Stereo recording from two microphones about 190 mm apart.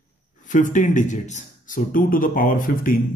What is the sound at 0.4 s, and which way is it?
Speech, 40° left (ahead or behind).